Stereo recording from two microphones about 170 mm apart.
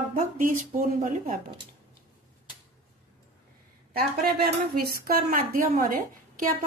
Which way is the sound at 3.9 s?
65° right (ahead or behind).